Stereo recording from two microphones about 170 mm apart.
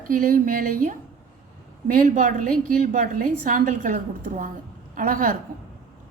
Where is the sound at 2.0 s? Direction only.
50° right (ahead or behind).